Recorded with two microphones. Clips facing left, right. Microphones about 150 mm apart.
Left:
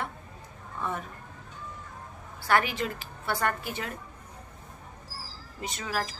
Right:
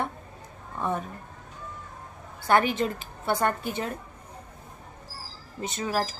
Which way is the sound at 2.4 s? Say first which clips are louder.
Right 4 dB; 25° right (ahead or behind).